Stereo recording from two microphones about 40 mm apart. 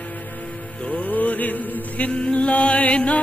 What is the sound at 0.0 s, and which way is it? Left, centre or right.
Music, left.